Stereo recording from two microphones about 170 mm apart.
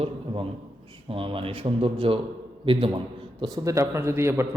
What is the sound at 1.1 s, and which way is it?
Speech, 30° right (ahead or behind).